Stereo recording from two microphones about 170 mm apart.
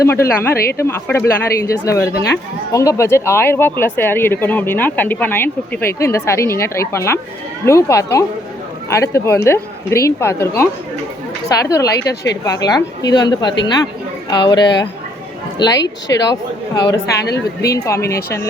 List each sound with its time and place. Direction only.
0.0 s speech: 15° left (ahead or behind)
0.5 s a woman's voice: 65° left (ahead or behind)
0.8 s a woman's voice: 15° left (ahead or behind)
11.9 s a woman's voice: 85° left
12.5 s a woman's voice: 20° left (ahead or behind)
15.8 s speech: 90° left
16.3 s a woman's voice: 25° left (ahead or behind)